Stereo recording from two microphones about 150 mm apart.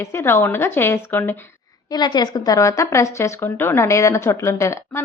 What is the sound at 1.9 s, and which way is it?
Speech, 30° left (ahead or behind).